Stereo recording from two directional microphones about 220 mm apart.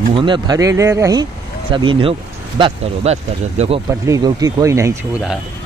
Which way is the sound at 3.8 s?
15° right (ahead or behind).